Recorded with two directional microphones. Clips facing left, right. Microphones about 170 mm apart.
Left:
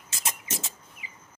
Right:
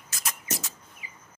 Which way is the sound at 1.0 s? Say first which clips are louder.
Even; 25° left (ahead or behind).